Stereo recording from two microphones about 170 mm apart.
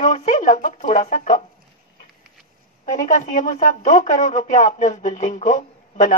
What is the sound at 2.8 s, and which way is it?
Speech, 45° left (ahead or behind).